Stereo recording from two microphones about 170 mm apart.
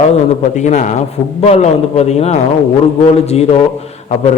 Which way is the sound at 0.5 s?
45° left (ahead or behind).